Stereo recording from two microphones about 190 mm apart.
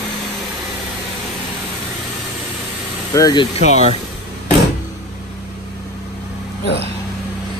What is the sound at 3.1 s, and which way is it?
Speech, 20° left (ahead or behind).